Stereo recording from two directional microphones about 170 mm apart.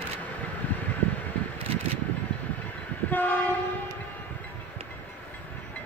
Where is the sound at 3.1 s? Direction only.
10° left (ahead or behind).